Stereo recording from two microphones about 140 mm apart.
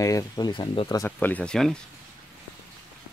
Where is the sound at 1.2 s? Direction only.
10° left (ahead or behind).